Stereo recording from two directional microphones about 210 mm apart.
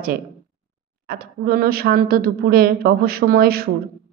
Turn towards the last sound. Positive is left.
turn(degrees=-45)  # may be behind; listen again after turning